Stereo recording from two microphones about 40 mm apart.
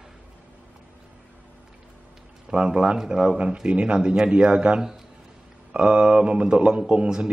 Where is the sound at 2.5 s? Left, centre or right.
Right.